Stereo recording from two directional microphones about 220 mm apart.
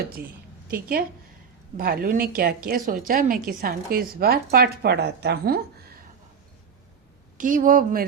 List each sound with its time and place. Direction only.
0.7 s a woman's voice: 40° right (ahead or behind)
7.3 s a woman's voice: 35° right (ahead or behind)